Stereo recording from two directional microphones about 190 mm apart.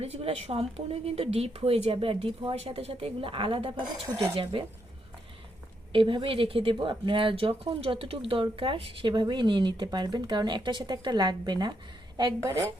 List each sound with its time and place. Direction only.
0.0 s speech: 30° right (ahead or behind)
5.9 s speech: 25° right (ahead or behind)